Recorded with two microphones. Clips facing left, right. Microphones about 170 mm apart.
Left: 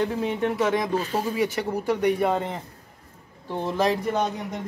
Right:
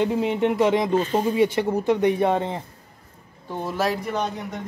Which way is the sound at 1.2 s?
25° right (ahead or behind).